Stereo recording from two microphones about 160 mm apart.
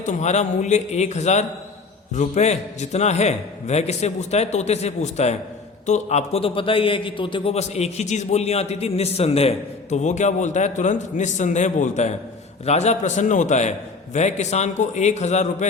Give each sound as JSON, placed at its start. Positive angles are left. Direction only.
{"t": 0.0, "sound": "a man's voice", "side_deg": 50}